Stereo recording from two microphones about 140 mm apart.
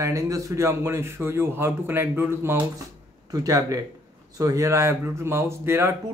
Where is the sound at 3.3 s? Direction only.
25° right (ahead or behind).